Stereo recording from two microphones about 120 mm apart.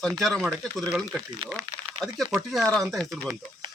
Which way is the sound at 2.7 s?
5° left (ahead or behind).